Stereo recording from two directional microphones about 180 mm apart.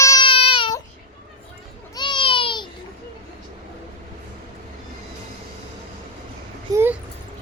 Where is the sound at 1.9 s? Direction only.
25° left (ahead or behind).